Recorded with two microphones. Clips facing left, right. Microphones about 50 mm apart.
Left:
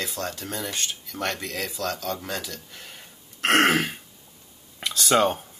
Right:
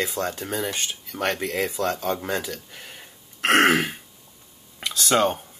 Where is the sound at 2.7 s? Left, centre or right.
Centre.